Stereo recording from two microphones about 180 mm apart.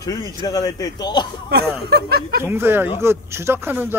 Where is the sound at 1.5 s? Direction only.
65° right (ahead or behind).